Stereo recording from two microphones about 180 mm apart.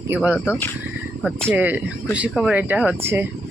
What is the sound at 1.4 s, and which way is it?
Speech, 10° right (ahead or behind).